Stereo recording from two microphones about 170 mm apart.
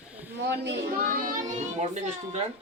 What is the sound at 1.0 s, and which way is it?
Child singing, 55° right (ahead or behind).